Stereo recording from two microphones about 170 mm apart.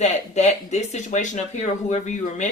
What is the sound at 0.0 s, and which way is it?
Speech, 40° left (ahead or behind).